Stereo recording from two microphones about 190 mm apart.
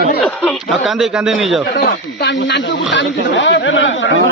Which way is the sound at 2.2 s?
65° left (ahead or behind).